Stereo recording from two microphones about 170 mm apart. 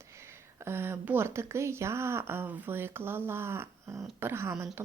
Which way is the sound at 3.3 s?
15° right (ahead or behind).